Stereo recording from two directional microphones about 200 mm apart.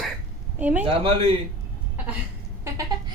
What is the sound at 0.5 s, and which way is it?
Speech, 10° right (ahead or behind).